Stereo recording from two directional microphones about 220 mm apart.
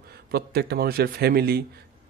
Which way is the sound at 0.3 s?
45° right (ahead or behind).